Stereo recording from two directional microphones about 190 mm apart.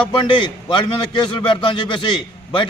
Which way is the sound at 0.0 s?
25° left (ahead or behind).